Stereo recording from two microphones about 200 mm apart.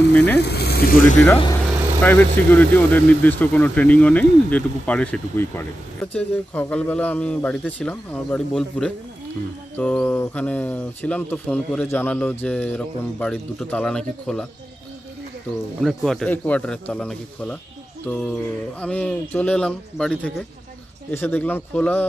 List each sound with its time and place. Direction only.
0.1 s speech: 5° left (ahead or behind)
0.4 s speech: 55° left (ahead or behind)
2.0 s speech: 10° left (ahead or behind)
15.8 s speech: centre (ahead or behind)